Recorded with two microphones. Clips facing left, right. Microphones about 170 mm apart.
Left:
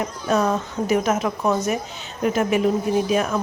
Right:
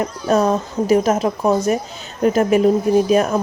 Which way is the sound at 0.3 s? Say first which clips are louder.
Right 4 dB; 35° right (ahead or behind).